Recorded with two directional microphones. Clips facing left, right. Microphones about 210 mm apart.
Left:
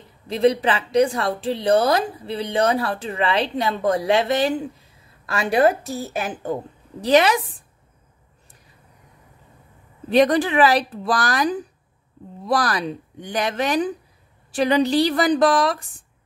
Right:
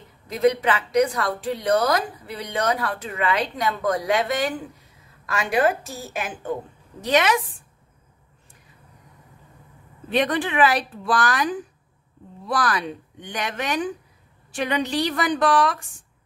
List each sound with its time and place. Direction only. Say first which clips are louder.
0.3 s speech: left 2 dB; 30° left (ahead or behind)
10.0 s speech: left 6 dB; 40° left (ahead or behind)